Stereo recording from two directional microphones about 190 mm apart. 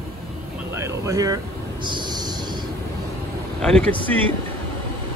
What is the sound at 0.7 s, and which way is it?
Vehicle, 15° right (ahead or behind).